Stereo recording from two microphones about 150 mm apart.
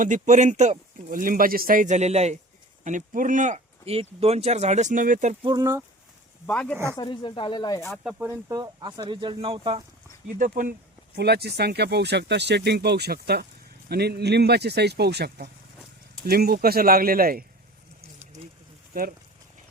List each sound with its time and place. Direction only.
0.0 s speech: 55° right (ahead or behind)
2.8 s speech: 60° right (ahead or behind)
5.4 s speech: 30° right (ahead or behind)
6.4 s speech: 5° left (ahead or behind)
6.9 s speech: 30° left (ahead or behind)
8.0 s speech: 15° right (ahead or behind); by 9.8 s 40° right (ahead or behind)
10.3 s speech: 60° right (ahead or behind); by 17.4 s 75° right (ahead or behind)
18.9 s speech: 75° right (ahead or behind)